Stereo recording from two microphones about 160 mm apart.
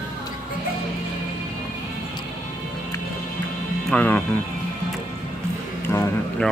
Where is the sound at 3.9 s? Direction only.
10° left (ahead or behind).